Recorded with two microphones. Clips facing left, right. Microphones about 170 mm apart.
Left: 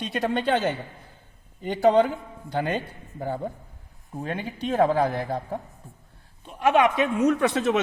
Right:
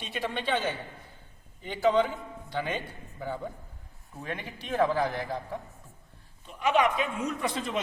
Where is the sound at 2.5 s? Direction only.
40° left (ahead or behind).